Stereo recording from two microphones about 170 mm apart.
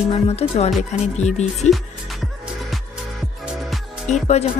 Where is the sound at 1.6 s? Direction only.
Centre (ahead or behind).